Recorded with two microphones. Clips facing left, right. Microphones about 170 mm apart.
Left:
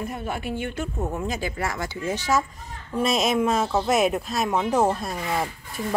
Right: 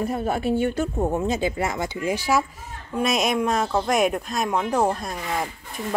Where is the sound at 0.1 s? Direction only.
35° right (ahead or behind); by 2.4 s 10° right (ahead or behind).